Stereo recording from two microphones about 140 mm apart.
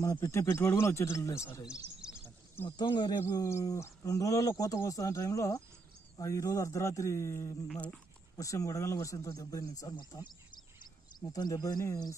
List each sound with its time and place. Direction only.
0.0 s speech: 20° left (ahead or behind)
1.7 s chirp: 5° right (ahead or behind)
2.8 s speech: 35° left (ahead or behind)
7.6 s speech: 5° left (ahead or behind)
8.4 s speech: 25° left (ahead or behind)